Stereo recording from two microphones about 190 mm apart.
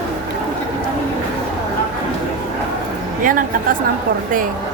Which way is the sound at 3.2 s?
45° right (ahead or behind).